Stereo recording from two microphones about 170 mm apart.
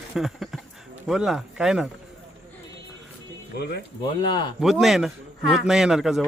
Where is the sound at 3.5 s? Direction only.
75° left (ahead or behind).